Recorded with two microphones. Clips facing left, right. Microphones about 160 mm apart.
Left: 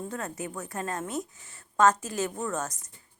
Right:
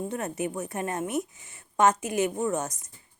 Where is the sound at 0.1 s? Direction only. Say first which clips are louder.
Right 5 dB; 20° right (ahead or behind).